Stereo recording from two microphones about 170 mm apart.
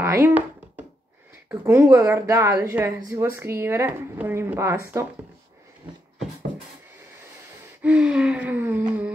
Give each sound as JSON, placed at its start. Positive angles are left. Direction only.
{"t": 0.0, "sound": "a sound", "side_deg": -15}
{"t": 1.5, "sound": "speech", "side_deg": -15}
{"t": 7.8, "sound": "speech", "side_deg": -5}